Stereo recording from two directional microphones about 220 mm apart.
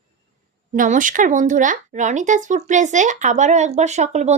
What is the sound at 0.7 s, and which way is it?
A woman's voice, 35° right (ahead or behind).